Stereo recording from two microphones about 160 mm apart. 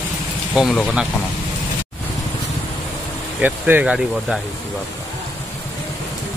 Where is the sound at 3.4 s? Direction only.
10° right (ahead or behind).